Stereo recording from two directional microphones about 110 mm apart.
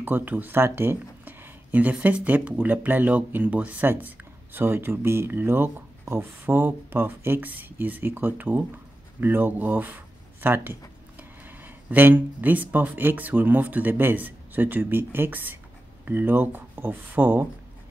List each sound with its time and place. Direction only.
0.0 s speech: 15° right (ahead or behind)